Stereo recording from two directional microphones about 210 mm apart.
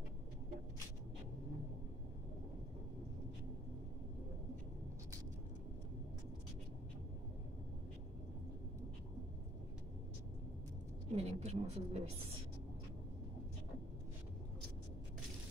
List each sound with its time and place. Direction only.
11.1 s speech: 30° right (ahead or behind)